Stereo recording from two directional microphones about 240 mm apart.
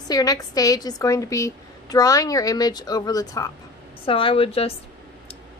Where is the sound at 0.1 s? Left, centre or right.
Centre.